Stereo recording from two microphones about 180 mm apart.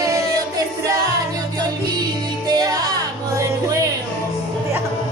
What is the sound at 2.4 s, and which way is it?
Music, 20° right (ahead or behind).